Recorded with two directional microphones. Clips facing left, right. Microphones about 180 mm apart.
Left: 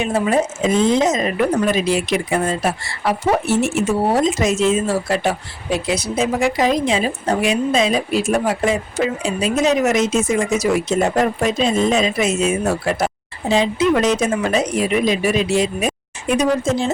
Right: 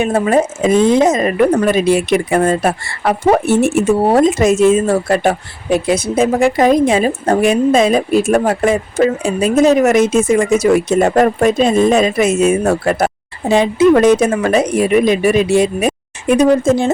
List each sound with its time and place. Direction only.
0.0 s speech: 50° right (ahead or behind)